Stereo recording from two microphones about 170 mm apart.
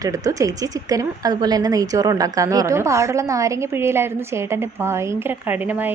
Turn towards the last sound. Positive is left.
turn(degrees=-10)  # may be behind; listen again after turning